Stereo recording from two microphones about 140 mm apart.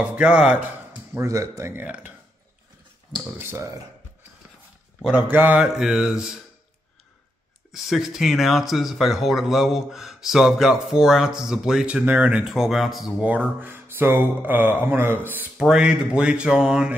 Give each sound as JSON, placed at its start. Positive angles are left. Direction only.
{"t": 0.0, "sound": "speech", "side_deg": -5}
{"t": 1.1, "sound": "speech", "side_deg": -20}
{"t": 3.3, "sound": "speech", "side_deg": -15}
{"t": 5.0, "sound": "speech", "side_deg": -10}
{"t": 7.7, "sound": "speech", "side_deg": 0}